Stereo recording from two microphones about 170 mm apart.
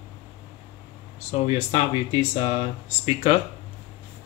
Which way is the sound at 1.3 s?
40° left (ahead or behind).